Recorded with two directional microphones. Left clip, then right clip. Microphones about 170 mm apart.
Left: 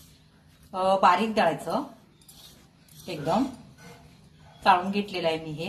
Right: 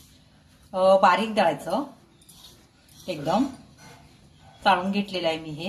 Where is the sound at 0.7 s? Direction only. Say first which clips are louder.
Right 3 dB; 15° right (ahead or behind).